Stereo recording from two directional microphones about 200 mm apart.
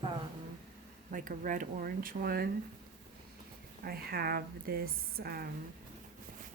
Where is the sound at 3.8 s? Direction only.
50° right (ahead or behind).